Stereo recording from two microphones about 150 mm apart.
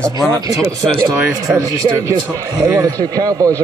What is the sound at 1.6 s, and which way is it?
Speech, 20° right (ahead or behind).